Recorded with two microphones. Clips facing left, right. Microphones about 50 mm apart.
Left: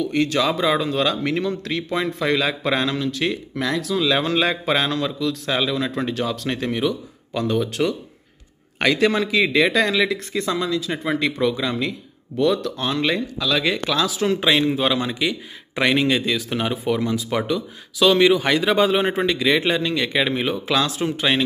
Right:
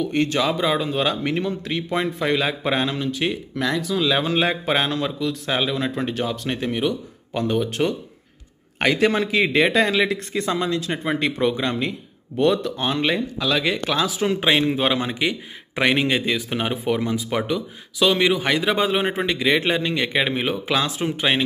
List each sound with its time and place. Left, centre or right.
0.1 s speech: right
0.4 s speech: centre
0.8 s speech: centre
3.5 s speech: centre
4.3 s speech: centre
8.7 s speech: right
14.5 s speech: right; by 19.3 s centre
19.3 s speech: centre